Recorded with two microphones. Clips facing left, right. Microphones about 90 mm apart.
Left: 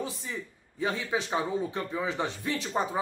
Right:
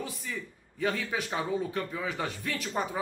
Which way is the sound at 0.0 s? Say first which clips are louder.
Left 2 dB; 25° left (ahead or behind).